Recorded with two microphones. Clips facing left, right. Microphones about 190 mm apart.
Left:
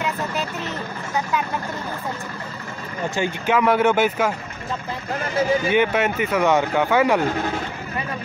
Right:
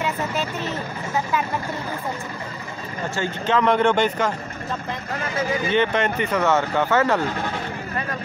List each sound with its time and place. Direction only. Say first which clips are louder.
0.0 s vehicle: right 1 dB; centre (ahead or behind)
3.2 s speech: left 1 dB; 10° left (ahead or behind)
5.7 s speech: left 1 dB; 10° left (ahead or behind)